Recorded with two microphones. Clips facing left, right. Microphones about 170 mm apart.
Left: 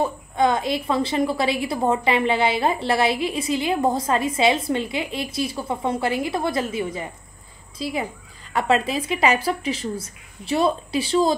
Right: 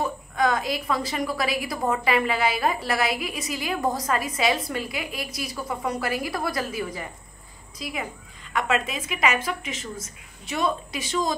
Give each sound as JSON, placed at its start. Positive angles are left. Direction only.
{"t": 0.0, "sound": "a woman's voice", "side_deg": 25}